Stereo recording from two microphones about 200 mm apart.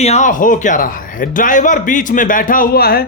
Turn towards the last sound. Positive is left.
turn(degrees=50)  # may be behind; listen again after turning